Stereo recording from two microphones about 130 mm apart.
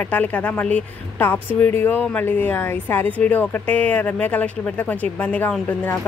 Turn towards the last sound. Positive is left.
turn(degrees=10)  # may be behind; listen again after turning